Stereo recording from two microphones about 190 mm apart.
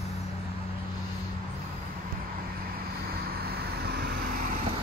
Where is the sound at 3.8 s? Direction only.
55° right (ahead or behind).